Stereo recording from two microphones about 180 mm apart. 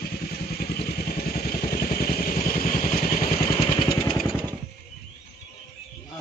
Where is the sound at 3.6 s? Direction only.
25° left (ahead or behind).